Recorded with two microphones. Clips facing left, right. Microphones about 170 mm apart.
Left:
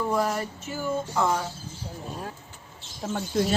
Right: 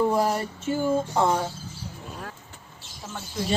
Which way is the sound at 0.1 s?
30° right (ahead or behind).